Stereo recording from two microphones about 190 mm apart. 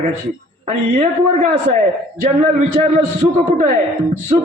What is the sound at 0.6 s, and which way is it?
Speech, 35° right (ahead or behind).